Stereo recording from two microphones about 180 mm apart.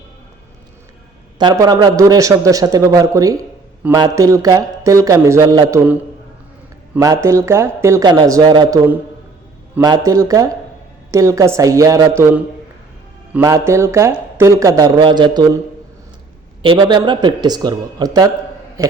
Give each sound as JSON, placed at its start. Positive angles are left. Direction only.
{"t": 1.4, "sound": "a man's voice", "side_deg": -25}
{"t": 6.9, "sound": "speech", "side_deg": -10}
{"t": 9.8, "sound": "a man's voice", "side_deg": -20}
{"t": 13.4, "sound": "speech", "side_deg": -15}
{"t": 16.6, "sound": "a man's voice", "side_deg": -25}